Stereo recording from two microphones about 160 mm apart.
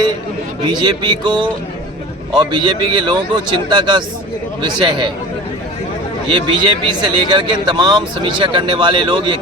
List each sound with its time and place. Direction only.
0.6 s speech: 25° right (ahead or behind)
6.3 s speech: 30° right (ahead or behind)